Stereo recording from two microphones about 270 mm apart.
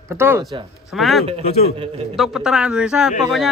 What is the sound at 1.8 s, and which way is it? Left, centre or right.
Speech, right.